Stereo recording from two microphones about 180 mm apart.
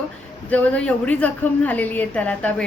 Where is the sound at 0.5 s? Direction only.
5° left (ahead or behind).